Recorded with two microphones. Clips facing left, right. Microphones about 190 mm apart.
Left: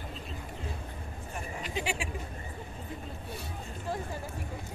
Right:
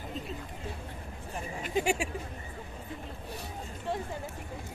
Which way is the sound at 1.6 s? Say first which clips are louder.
Right 6 dB; 45° right (ahead or behind).